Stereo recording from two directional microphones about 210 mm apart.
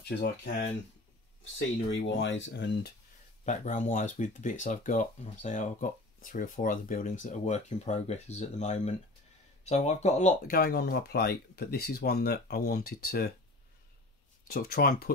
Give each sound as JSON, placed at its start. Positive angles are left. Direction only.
{"t": 0.0, "sound": "speech", "side_deg": 50}
{"t": 2.0, "sound": "speech", "side_deg": 60}
{"t": 3.4, "sound": "speech", "side_deg": 35}
{"t": 14.5, "sound": "speech", "side_deg": 45}